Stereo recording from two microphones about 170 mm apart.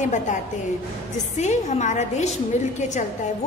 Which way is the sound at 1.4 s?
45° left (ahead or behind).